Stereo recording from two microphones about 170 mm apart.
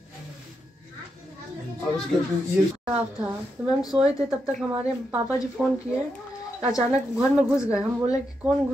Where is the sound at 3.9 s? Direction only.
20° right (ahead or behind).